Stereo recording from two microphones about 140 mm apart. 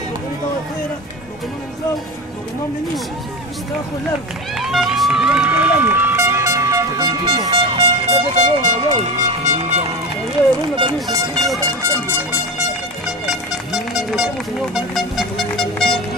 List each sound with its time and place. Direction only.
4.6 s run: centre (ahead or behind); by 7.5 s 30° right (ahead or behind)
7.5 s vehicle: 40° right (ahead or behind)
8.4 s vehicle: 60° right (ahead or behind)
10.8 s speech: 30° right (ahead or behind)
11.6 s a sound: 15° right (ahead or behind)
13.0 s speech: centre (ahead or behind)